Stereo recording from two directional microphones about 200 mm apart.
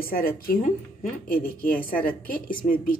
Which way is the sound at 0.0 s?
45° left (ahead or behind).